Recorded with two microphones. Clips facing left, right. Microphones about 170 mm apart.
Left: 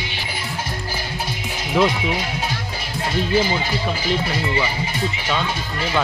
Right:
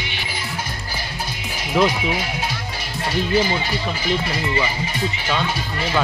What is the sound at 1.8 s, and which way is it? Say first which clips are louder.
Speech: even; centre (ahead or behind).